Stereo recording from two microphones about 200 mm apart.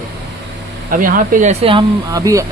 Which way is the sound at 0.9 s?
40° right (ahead or behind).